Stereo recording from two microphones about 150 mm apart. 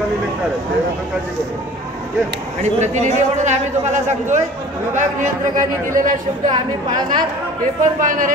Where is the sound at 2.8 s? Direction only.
50° right (ahead or behind).